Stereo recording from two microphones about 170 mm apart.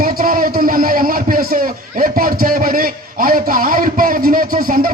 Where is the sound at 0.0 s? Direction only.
55° right (ahead or behind).